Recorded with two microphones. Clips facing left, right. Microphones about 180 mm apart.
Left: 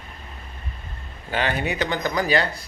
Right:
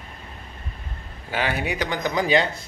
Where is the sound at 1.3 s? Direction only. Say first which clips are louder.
Left 1 dB; 10° right (ahead or behind).